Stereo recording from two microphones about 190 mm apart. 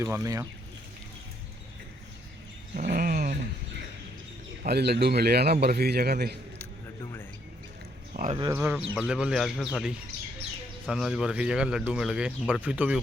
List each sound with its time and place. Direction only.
0.0 s speech: 15° right (ahead or behind)
2.7 s a sound: 50° right (ahead or behind)
4.6 s a man's voice: 60° right (ahead or behind)
7.0 s mouse: 15° left (ahead or behind)
8.1 s speech: 35° right (ahead or behind)
8.4 s speech: 15° right (ahead or behind)
10.8 s speech: centre (ahead or behind)